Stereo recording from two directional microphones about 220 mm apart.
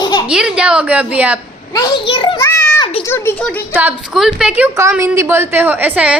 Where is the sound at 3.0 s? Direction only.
10° left (ahead or behind).